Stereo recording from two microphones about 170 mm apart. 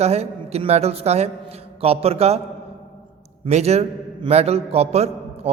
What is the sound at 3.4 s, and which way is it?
A man's voice, 40° right (ahead or behind).